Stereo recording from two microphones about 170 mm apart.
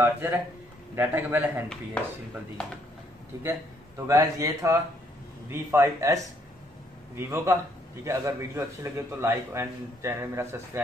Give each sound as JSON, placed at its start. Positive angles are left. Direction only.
{"t": 0.0, "sound": "a man's voice", "side_deg": -15}
{"t": 2.0, "sound": "speech", "side_deg": 5}
{"t": 4.1, "sound": "a man's voice", "side_deg": -20}
{"t": 7.2, "sound": "a man's voice", "side_deg": -15}